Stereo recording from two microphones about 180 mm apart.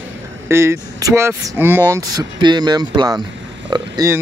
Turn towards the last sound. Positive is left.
turn(degrees=-20)  # may be behind; listen again after turning